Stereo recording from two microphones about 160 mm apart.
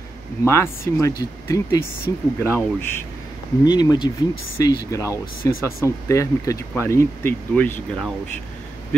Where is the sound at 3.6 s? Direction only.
25° left (ahead or behind).